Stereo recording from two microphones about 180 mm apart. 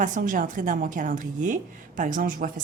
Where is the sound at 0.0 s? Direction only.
45° right (ahead or behind).